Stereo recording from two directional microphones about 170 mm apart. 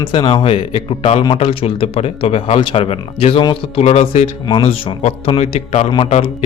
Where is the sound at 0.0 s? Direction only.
30° left (ahead or behind).